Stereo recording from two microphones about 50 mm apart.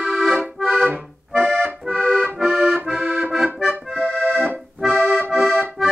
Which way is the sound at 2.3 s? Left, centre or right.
Centre.